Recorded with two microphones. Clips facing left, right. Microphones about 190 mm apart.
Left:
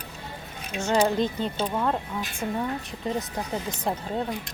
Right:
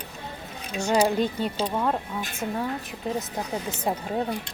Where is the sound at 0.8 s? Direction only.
10° right (ahead or behind).